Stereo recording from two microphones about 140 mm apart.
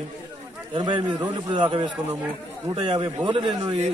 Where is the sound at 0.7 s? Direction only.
35° right (ahead or behind).